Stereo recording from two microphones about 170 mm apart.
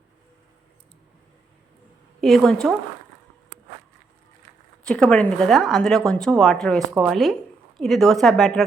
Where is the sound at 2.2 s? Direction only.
Centre (ahead or behind).